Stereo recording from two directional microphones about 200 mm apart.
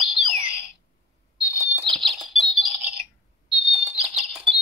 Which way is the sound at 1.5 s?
Centre (ahead or behind).